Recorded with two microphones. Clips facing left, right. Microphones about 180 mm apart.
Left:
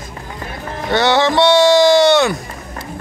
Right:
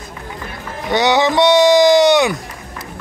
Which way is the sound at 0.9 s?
15° right (ahead or behind).